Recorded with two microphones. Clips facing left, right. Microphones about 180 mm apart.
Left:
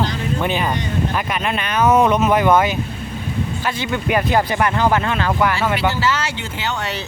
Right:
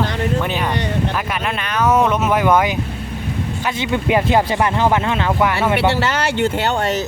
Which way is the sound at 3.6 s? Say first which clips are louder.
Right 4 dB; 20° right (ahead or behind).